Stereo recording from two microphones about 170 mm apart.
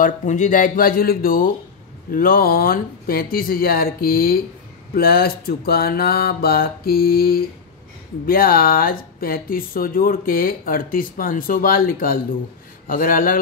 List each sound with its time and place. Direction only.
0.0 s speech: 45° left (ahead or behind)